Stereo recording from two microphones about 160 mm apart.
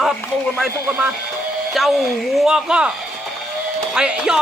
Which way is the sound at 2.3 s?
5° right (ahead or behind).